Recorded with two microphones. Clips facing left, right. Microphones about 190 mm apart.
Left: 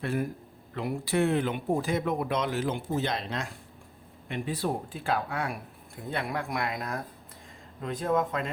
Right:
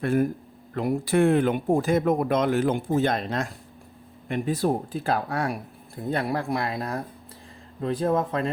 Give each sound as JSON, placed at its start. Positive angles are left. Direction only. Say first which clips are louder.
{"t": 0.0, "sound": "speech", "louder": "right 7 dB", "side_deg": -50}